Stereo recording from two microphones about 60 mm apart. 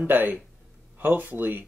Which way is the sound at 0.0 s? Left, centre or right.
Right.